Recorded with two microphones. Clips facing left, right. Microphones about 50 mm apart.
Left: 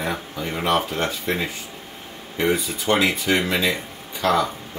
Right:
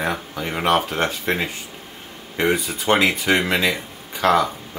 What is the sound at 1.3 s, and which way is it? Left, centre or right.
Speech, right.